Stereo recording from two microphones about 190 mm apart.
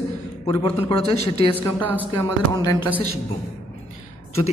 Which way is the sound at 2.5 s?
20° left (ahead or behind).